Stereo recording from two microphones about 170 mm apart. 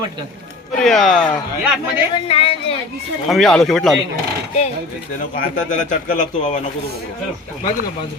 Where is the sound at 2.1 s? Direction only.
35° left (ahead or behind).